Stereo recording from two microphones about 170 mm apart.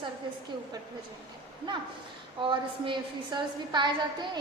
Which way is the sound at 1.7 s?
30° right (ahead or behind).